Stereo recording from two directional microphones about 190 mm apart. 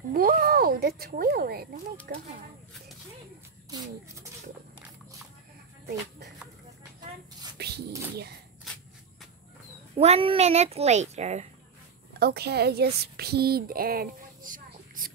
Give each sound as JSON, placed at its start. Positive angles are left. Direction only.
{"t": 0.1, "sound": "a sound", "side_deg": -50}
{"t": 2.0, "sound": "speech", "side_deg": -50}
{"t": 5.9, "sound": "a sound", "side_deg": -60}
{"t": 7.5, "sound": "bird", "side_deg": -60}
{"t": 9.9, "sound": "a child's voice", "side_deg": -30}
{"t": 12.2, "sound": "speech", "side_deg": -55}